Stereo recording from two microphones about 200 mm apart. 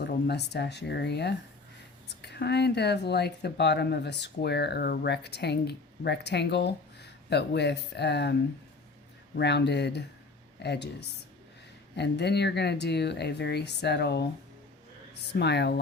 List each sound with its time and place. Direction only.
0.0 s speech: 55° left (ahead or behind)
9.4 s speech: 55° left (ahead or behind)
11.9 s speech: 55° left (ahead or behind)